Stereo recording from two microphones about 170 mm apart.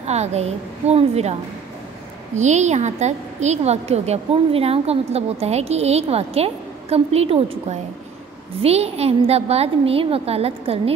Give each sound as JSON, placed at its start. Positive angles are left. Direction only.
{"t": 0.0, "sound": "a woman's voice", "side_deg": -40}
{"t": 2.3, "sound": "a woman's voice", "side_deg": -45}
{"t": 8.6, "sound": "a woman's voice", "side_deg": -35}